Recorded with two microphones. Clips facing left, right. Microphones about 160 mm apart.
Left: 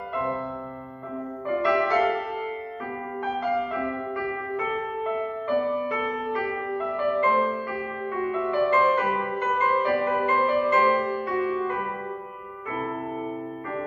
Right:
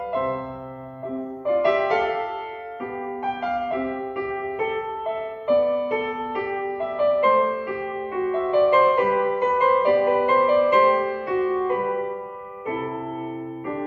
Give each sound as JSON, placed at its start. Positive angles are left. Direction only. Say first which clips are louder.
{"t": 1.6, "sound": "music", "louder": "right 1 dB", "side_deg": -20}
{"t": 5.5, "sound": "music", "louder": "right 7 dB", "side_deg": -25}
{"t": 8.5, "sound": "music", "louder": "right 5 dB", "side_deg": -20}